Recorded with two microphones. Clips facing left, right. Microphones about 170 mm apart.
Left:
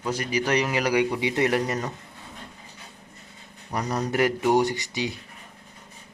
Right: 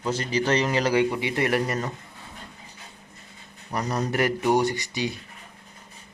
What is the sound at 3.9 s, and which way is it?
Speech, 15° left (ahead or behind).